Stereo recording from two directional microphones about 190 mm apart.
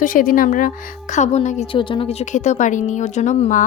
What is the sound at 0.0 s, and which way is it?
A woman's voice, 45° left (ahead or behind).